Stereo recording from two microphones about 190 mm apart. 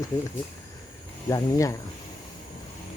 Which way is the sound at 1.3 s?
15° left (ahead or behind).